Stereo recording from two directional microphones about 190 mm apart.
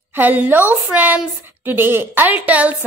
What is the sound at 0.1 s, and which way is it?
A woman's voice, 10° right (ahead or behind).